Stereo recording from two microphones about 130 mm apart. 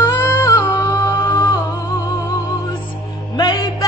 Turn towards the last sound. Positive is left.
turn(degrees=30)  # may be behind; listen again after turning